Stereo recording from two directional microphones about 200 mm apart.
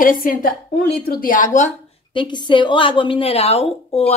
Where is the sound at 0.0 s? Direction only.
45° left (ahead or behind).